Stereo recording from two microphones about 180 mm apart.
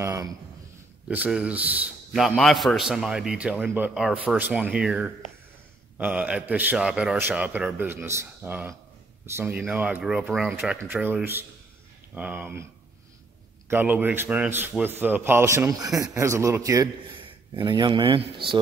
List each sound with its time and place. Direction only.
0.0 s a sound: 15° right (ahead or behind)
1.0 s a man's voice: 5° right (ahead or behind)
13.7 s a man's voice: 10° right (ahead or behind); by 18.6 s 30° right (ahead or behind)